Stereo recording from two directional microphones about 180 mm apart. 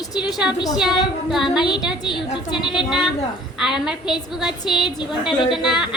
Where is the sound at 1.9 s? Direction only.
25° left (ahead or behind).